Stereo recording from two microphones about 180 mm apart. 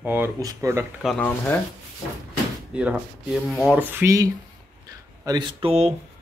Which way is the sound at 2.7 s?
5° right (ahead or behind).